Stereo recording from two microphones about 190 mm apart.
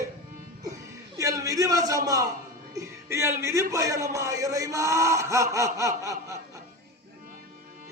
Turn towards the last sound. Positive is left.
turn(degrees=-15)  # may be behind; listen again after turning